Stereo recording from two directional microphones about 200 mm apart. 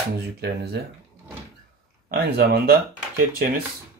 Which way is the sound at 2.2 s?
50° right (ahead or behind).